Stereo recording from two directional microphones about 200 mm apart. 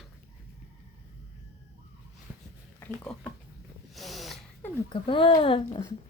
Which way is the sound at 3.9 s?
Centre (ahead or behind).